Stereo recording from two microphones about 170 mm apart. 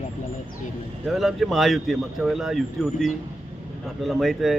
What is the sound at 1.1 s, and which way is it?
Speech, centre (ahead or behind).